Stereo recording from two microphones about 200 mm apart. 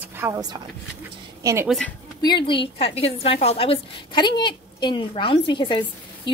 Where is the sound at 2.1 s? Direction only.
20° left (ahead or behind).